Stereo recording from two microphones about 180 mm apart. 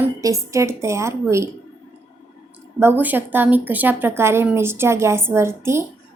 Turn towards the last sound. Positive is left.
turn(degrees=-15)  # may be behind; listen again after turning